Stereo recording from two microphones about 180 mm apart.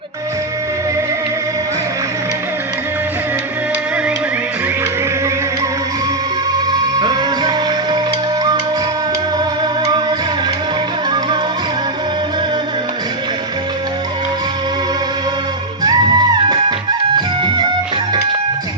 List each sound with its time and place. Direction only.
7.0 s music: 25° right (ahead or behind)
15.8 s music: 20° right (ahead or behind)